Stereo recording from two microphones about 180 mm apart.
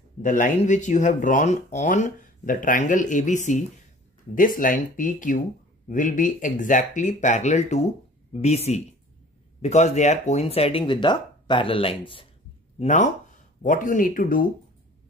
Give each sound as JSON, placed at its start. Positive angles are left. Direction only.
{"t": 0.2, "sound": "speech", "side_deg": 45}
{"t": 12.7, "sound": "speech", "side_deg": 40}